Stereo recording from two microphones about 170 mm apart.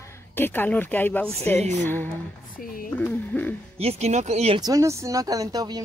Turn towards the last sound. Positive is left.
turn(degrees=-25)  # may be behind; listen again after turning